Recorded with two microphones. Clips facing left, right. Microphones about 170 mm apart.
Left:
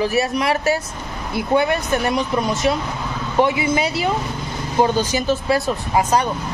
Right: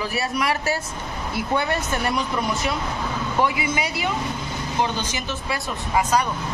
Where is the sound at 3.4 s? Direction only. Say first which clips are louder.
Left 5 dB; 30° left (ahead or behind).